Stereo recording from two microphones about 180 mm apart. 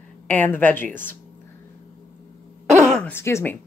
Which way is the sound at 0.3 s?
10° left (ahead or behind).